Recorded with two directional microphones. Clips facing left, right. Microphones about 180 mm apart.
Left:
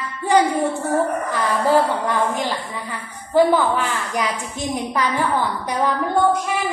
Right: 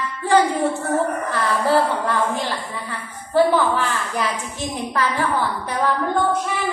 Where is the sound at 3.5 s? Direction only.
15° left (ahead or behind).